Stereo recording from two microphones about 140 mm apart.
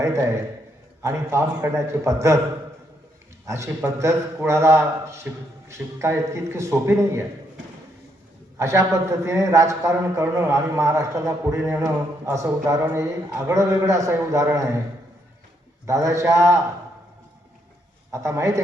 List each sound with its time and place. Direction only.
0.0 s a man's voice: 20° right (ahead or behind)
3.4 s a man's voice: 20° right (ahead or behind)
8.5 s a man's voice: 20° right (ahead or behind)
15.9 s a man's voice: 20° right (ahead or behind)
18.1 s a man's voice: 20° right (ahead or behind)